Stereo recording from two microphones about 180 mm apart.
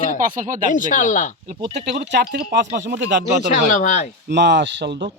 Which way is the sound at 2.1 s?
60° right (ahead or behind).